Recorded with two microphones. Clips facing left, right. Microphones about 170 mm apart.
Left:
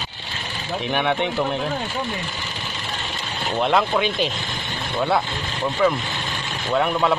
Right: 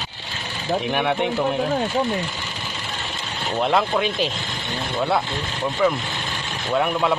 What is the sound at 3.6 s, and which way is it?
Speech, centre (ahead or behind).